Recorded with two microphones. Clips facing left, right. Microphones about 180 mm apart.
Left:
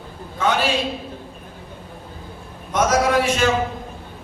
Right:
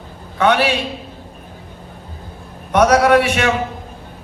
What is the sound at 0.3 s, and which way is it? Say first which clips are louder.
Speech: right 5 dB; 70° right (ahead or behind).